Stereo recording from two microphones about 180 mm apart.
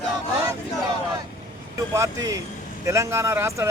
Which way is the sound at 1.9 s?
20° right (ahead or behind).